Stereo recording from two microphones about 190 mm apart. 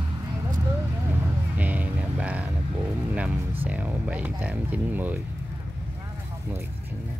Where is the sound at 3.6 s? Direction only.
10° right (ahead or behind).